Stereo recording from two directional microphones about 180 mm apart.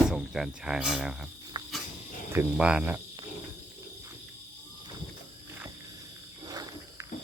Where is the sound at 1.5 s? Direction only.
20° right (ahead or behind).